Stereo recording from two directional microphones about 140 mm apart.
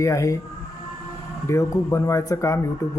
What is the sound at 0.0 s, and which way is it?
Speech, 20° left (ahead or behind).